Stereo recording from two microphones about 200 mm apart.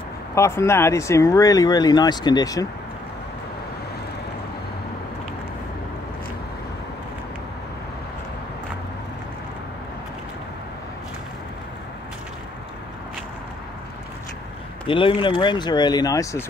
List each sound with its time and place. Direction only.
0.3 s speech: 15° left (ahead or behind)
14.9 s speech: 25° left (ahead or behind)